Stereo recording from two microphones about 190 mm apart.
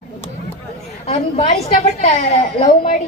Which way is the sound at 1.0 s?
30° left (ahead or behind).